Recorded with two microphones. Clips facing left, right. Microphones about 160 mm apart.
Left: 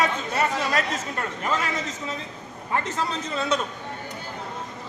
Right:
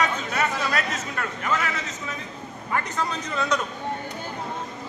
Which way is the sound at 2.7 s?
25° left (ahead or behind).